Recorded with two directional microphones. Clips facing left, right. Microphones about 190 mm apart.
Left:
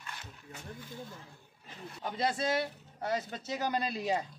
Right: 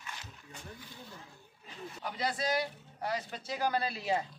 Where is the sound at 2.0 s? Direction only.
25° left (ahead or behind).